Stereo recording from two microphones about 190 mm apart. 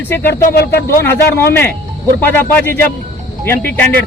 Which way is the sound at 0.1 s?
10° left (ahead or behind).